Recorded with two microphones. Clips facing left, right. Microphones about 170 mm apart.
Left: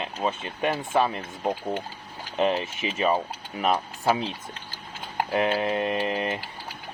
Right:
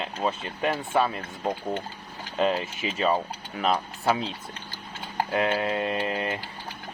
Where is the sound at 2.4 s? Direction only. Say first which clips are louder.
Left 1 dB; 20° left (ahead or behind).